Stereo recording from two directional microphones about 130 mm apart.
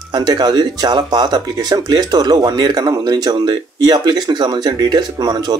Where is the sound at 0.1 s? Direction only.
30° right (ahead or behind).